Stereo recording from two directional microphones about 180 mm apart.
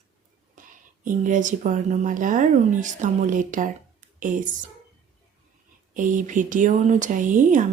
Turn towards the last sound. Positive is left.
turn(degrees=-45)  # may be behind; listen again after turning